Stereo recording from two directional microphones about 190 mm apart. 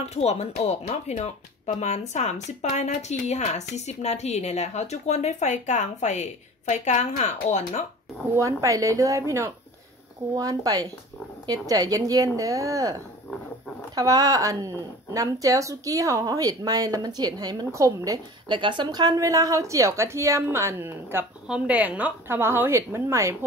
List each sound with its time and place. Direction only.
0.0 s speech: 35° left (ahead or behind)
8.4 s speech: 15° right (ahead or behind)
13.9 s speech: 20° right (ahead or behind)